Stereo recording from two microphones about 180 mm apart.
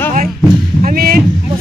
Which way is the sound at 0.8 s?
55° right (ahead or behind).